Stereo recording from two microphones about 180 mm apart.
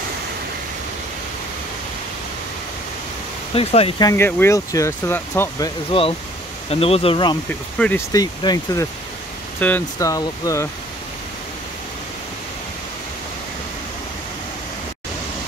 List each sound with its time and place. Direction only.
3.5 s speech: 30° left (ahead or behind)
4.1 s speech: 15° left (ahead or behind)
5.9 s speech: 30° left (ahead or behind)